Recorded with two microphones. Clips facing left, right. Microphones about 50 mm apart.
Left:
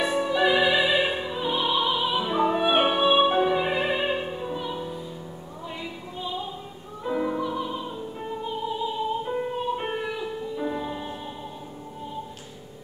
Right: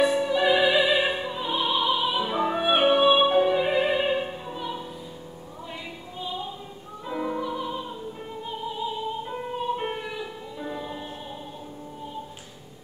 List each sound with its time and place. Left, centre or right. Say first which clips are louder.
0.0 s music: right 1 dB; centre
7.1 s music: left 3 dB; centre
9.5 s music: left 1 dB; centre